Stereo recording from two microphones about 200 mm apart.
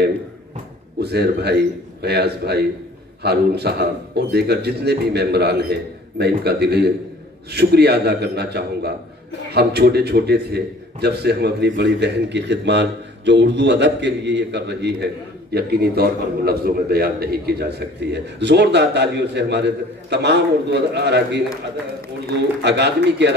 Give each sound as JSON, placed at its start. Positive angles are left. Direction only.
{"t": 0.9, "sound": "a man's voice", "side_deg": -55}
{"t": 22.6, "sound": "a man's voice", "side_deg": -60}